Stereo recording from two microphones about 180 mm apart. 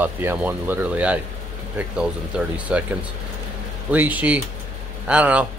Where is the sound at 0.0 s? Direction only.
10° right (ahead or behind).